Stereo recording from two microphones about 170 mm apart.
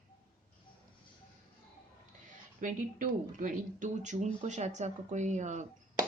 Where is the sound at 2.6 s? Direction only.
50° right (ahead or behind).